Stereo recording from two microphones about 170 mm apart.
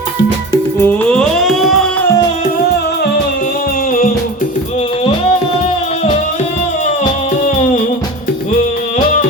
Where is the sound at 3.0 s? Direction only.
60° left (ahead or behind).